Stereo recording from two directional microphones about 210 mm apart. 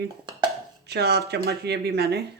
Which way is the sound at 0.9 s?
50° right (ahead or behind).